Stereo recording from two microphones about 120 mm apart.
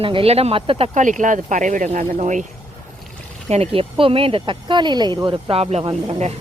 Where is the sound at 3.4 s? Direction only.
60° right (ahead or behind).